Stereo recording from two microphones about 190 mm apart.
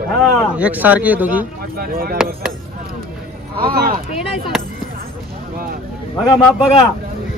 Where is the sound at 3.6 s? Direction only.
50° right (ahead or behind).